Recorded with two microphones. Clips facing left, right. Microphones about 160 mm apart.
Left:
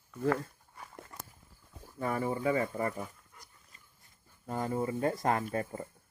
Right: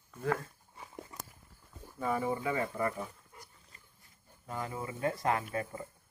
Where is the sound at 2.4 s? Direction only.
30° left (ahead or behind).